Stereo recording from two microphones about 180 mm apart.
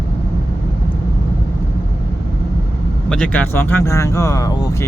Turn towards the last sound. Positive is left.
turn(degrees=20)  # may be behind; listen again after turning